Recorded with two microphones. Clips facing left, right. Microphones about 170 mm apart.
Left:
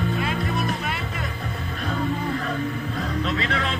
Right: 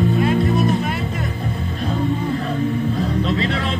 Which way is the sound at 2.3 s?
30° right (ahead or behind).